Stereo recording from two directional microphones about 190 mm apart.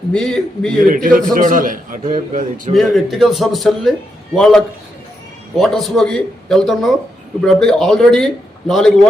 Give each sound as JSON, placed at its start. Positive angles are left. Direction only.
{"t": 0.1, "sound": "a man's voice", "side_deg": 5}
{"t": 0.9, "sound": "a man's voice", "side_deg": -45}
{"t": 2.7, "sound": "a man's voice", "side_deg": 0}